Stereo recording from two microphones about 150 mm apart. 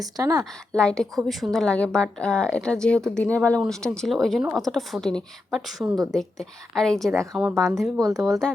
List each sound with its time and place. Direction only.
0.0 s speech: 20° right (ahead or behind)
0.7 s a woman's voice: 5° left (ahead or behind)
7.9 s speech: 25° right (ahead or behind)
8.2 s a woman's voice: centre (ahead or behind)